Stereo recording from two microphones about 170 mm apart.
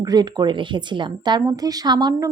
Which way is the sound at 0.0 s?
25° right (ahead or behind).